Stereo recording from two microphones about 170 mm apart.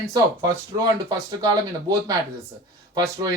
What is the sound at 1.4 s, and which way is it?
Speech, 20° right (ahead or behind).